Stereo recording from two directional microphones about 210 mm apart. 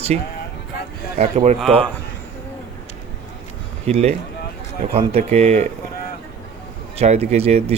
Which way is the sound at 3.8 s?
30° right (ahead or behind).